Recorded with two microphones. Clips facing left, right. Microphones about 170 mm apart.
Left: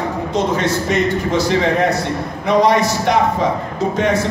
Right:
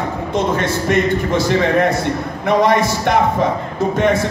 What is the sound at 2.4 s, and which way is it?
Speech, 55° right (ahead or behind).